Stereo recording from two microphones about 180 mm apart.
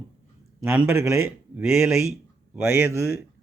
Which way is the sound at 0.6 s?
5° right (ahead or behind).